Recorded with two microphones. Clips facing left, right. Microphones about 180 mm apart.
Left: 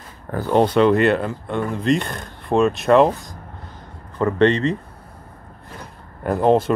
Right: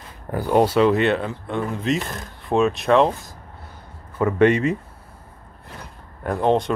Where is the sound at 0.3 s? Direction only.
10° right (ahead or behind).